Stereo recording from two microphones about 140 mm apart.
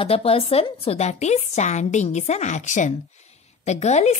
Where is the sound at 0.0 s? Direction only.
45° left (ahead or behind).